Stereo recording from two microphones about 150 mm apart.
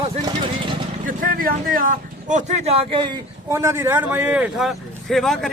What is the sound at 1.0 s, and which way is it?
Speech, 70° right (ahead or behind).